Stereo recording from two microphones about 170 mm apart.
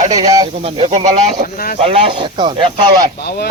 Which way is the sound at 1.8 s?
30° right (ahead or behind).